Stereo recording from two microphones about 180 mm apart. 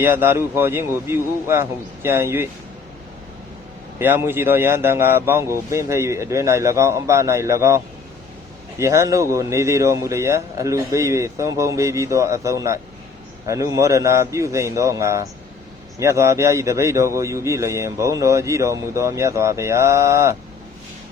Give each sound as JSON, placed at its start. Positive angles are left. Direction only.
{"t": 0.0, "sound": "speech", "side_deg": -15}
{"t": 3.9, "sound": "speech", "side_deg": -15}
{"t": 8.8, "sound": "speech", "side_deg": -15}